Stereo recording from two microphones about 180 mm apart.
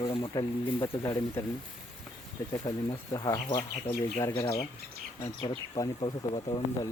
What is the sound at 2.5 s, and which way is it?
Speech, 20° left (ahead or behind).